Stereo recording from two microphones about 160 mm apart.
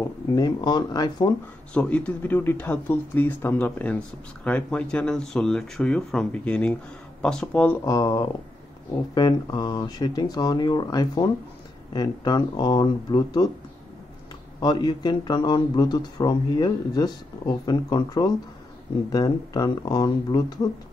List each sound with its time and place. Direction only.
0.4 s speech: 25° left (ahead or behind)
1.7 s speech: 5° left (ahead or behind)
7.8 s speech: 20° left (ahead or behind)
14.6 s speech: 25° left (ahead or behind)